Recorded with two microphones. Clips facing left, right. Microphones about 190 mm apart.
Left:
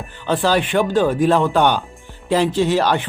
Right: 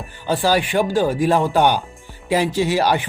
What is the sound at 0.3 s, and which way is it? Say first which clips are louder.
Speech: left 1 dB; 10° right (ahead or behind).